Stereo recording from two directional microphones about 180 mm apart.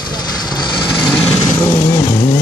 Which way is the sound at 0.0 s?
25° left (ahead or behind).